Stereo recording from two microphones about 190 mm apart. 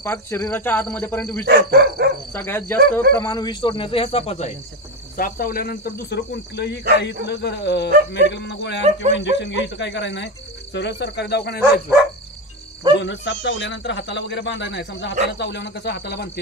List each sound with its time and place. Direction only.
0.0 s speech: 15° left (ahead or behind)
1.4 s speech: 55° right (ahead or behind)
2.3 s speech: 10° left (ahead or behind)
3.2 s speech: 20° left (ahead or behind)
5.1 s speech: 50° left (ahead or behind)
12.9 s a man's voice: 70° left (ahead or behind)